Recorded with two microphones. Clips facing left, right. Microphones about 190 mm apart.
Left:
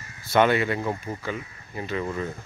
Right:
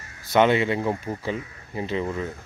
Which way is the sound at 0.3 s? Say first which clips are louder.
Right 1 dB; 20° right (ahead or behind).